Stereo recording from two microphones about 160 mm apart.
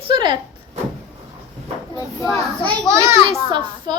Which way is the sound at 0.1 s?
30° right (ahead or behind).